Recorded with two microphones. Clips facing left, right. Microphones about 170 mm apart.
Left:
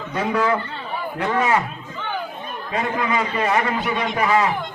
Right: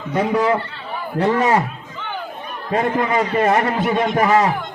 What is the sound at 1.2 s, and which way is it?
Speech, 35° right (ahead or behind).